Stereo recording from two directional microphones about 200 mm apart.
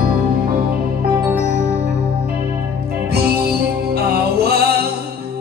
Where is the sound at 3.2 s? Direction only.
50° right (ahead or behind).